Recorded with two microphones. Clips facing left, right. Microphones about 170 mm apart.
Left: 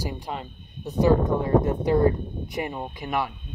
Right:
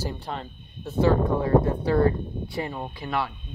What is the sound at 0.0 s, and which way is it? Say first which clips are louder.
Speech: even; 10° left (ahead or behind).